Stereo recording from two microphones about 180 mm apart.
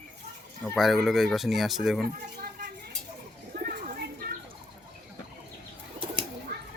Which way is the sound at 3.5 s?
55° right (ahead or behind).